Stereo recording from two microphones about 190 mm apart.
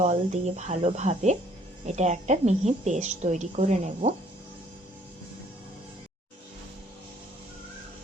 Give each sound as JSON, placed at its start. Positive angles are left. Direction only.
{"t": 0.0, "sound": "a woman's voice", "side_deg": -35}